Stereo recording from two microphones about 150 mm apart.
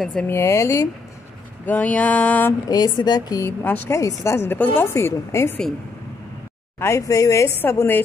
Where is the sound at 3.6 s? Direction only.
10° left (ahead or behind).